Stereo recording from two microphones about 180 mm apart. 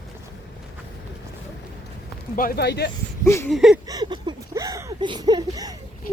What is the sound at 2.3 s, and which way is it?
Speech, 50° left (ahead or behind).